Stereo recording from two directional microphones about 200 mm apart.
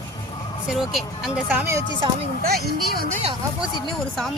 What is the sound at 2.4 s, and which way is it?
Speech, 50° right (ahead or behind).